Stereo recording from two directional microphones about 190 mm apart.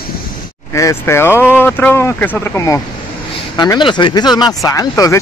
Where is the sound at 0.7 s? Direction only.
15° left (ahead or behind).